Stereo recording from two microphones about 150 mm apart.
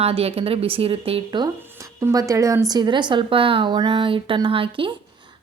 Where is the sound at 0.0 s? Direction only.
40° right (ahead or behind).